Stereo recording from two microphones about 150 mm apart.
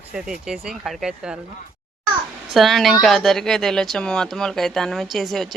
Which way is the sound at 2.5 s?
Centre (ahead or behind).